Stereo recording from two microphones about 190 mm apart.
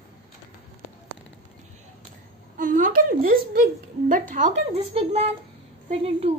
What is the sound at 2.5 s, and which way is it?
A woman's voice, 45° right (ahead or behind).